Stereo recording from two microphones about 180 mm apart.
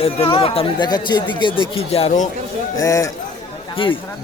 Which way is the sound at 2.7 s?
20° left (ahead or behind).